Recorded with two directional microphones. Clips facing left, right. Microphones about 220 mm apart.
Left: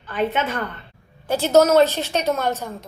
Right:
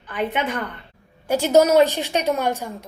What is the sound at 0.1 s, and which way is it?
A woman's voice, 15° right (ahead or behind).